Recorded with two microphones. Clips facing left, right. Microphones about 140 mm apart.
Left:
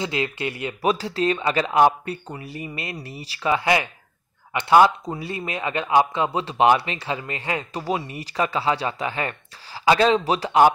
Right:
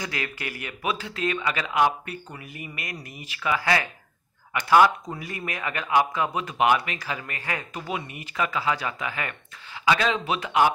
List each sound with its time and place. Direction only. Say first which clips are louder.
0.0 s speech: left 7 dB; 25° left (ahead or behind)
0.8 s speech: left 6 dB; 35° left (ahead or behind)
7.8 s speech: left 6 dB; 35° left (ahead or behind)